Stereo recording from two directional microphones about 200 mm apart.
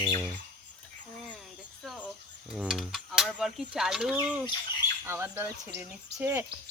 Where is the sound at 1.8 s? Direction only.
Centre (ahead or behind).